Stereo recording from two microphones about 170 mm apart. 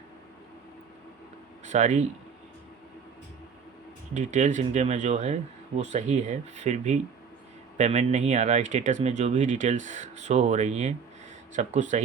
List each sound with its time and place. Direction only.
1.6 s speech: 45° right (ahead or behind)
4.1 s speech: 45° right (ahead or behind)